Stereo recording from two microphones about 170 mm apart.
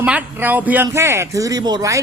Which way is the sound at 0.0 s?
10° right (ahead or behind).